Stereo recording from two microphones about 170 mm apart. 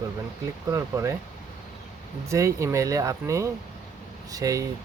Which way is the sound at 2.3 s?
15° right (ahead or behind).